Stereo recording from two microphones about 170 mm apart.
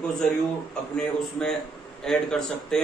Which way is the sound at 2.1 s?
5° left (ahead or behind).